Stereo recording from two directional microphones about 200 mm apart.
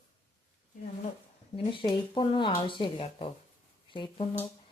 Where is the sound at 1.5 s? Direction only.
25° left (ahead or behind).